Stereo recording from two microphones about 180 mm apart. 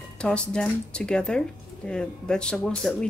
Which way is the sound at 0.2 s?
5° left (ahead or behind).